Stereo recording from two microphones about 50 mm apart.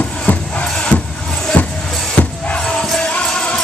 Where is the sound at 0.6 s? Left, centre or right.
Centre.